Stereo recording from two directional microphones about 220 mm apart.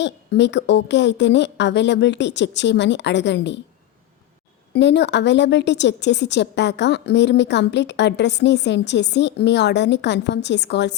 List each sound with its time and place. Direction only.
0.0 s a woman's voice: 55° left (ahead or behind)
4.7 s a woman's voice: 50° left (ahead or behind)